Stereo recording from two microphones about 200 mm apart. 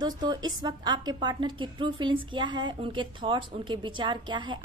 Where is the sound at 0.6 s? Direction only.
20° right (ahead or behind).